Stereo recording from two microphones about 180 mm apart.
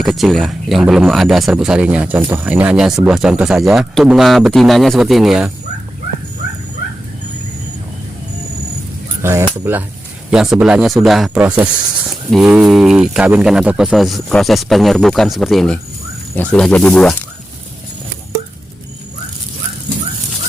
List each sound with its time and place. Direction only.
0.0 s speech: centre (ahead or behind)
9.2 s speech: 15° right (ahead or behind); by 17.2 s 5° left (ahead or behind)